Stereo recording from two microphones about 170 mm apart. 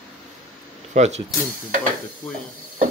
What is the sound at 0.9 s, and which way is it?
Speech, 40° right (ahead or behind).